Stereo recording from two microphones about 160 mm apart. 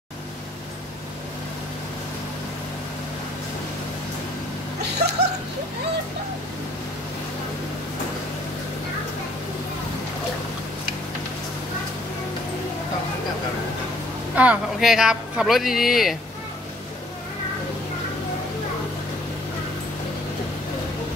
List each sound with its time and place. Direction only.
4.8 s dog: 90° right
14.3 s speech: 10° right (ahead or behind)